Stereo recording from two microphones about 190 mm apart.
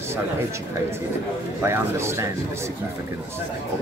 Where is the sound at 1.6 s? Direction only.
15° right (ahead or behind).